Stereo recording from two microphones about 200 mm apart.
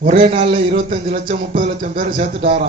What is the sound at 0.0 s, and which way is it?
A man's voice, 35° right (ahead or behind).